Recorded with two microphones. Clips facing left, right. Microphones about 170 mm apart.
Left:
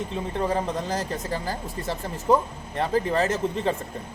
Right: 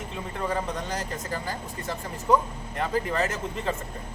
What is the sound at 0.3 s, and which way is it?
Speech, 30° left (ahead or behind).